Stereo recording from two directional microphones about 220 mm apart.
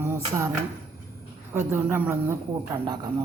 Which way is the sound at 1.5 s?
10° right (ahead or behind).